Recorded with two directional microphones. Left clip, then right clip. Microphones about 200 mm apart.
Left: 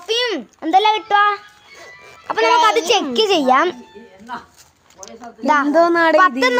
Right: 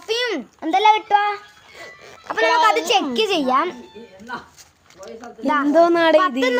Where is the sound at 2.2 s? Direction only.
40° left (ahead or behind).